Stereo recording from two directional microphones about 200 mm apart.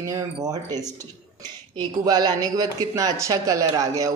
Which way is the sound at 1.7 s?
20° right (ahead or behind).